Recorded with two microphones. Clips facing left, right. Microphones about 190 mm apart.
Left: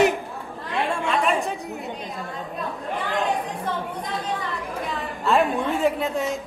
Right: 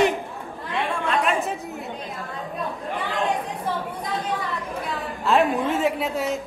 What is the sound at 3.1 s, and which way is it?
Chatter, centre (ahead or behind).